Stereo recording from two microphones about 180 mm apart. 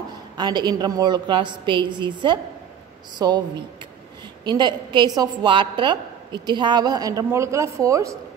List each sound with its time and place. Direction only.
0.4 s a woman's voice: 25° right (ahead or behind)
4.5 s a woman's voice: 25° right (ahead or behind)